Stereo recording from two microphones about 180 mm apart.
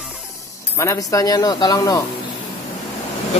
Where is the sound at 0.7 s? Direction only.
15° left (ahead or behind).